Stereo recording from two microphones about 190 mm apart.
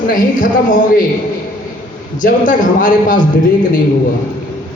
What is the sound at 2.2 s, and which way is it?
A woman's voice, 45° left (ahead or behind).